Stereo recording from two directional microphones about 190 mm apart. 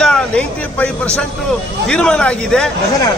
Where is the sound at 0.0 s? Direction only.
5° left (ahead or behind).